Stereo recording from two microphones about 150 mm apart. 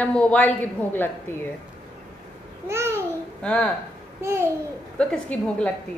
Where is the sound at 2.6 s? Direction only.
15° right (ahead or behind).